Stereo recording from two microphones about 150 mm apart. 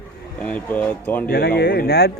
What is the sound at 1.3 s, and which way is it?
Speech, 90° left.